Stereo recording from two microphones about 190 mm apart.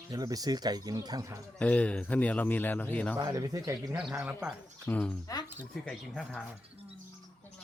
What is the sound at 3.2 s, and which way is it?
Speech, 20° right (ahead or behind).